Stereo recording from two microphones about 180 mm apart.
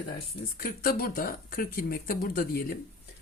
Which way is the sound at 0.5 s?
55° left (ahead or behind).